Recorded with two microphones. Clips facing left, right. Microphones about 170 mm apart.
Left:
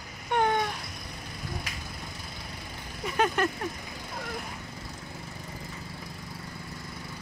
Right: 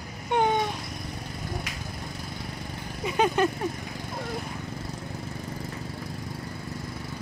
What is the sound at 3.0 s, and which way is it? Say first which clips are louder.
Speech: right 3 dB; 15° right (ahead or behind).